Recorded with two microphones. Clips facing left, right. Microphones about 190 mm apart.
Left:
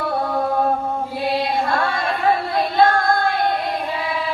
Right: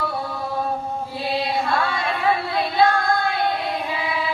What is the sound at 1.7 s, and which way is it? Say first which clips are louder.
Music: left 2 dB; 45° left (ahead or behind).